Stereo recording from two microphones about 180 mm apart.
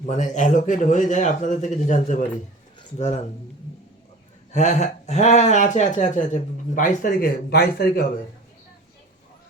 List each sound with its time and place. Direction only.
0.1 s speech: 45° left (ahead or behind)
4.5 s speech: 40° left (ahead or behind); by 8.0 s 60° left (ahead or behind)